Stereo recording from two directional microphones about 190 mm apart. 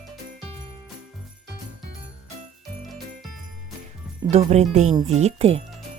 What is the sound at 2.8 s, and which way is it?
Jingle, centre (ahead or behind).